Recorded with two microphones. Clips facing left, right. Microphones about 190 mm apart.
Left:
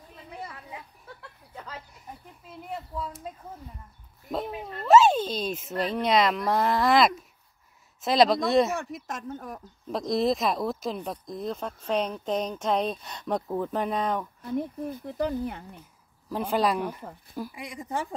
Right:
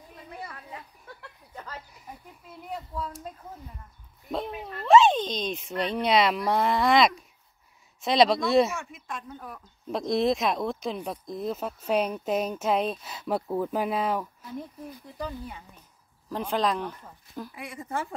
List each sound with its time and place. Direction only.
0.1 s children playing: centre (ahead or behind)
1.2 s a sound: 5° left (ahead or behind)
4.3 s speech: centre (ahead or behind)
8.7 s speech: 40° left (ahead or behind)
9.8 s speech: centre (ahead or behind)
14.4 s speech: 60° left (ahead or behind)
16.3 s speech: 10° left (ahead or behind)